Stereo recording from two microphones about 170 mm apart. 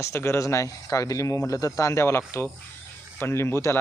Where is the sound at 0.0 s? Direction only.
15° left (ahead or behind).